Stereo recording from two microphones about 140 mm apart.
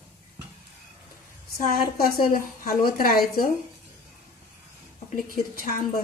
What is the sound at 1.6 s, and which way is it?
A woman's voice, 90° left.